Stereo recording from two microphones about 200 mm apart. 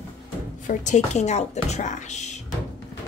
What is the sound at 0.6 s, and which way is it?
A woman's voice, 35° left (ahead or behind).